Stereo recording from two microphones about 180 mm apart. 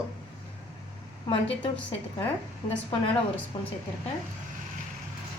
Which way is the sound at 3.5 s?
25° left (ahead or behind).